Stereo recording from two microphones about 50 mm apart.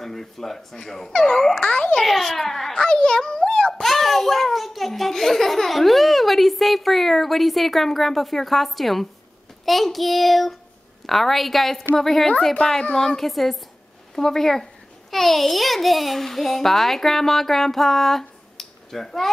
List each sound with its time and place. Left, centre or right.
0.0 s a child's voice: centre
2.0 s a child's voice: centre
3.8 s a child's voice: centre
12.6 s speech: left
12.9 s a child's voice: centre